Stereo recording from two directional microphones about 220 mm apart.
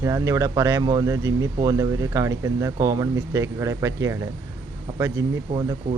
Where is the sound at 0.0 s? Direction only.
15° right (ahead or behind).